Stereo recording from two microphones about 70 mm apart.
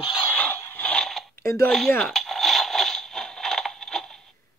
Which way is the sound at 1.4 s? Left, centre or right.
Left.